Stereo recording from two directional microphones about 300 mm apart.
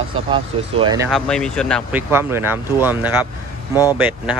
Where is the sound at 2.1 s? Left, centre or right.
Centre.